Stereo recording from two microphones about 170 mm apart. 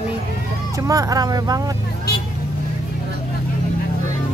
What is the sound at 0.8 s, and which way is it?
Speech, 20° right (ahead or behind).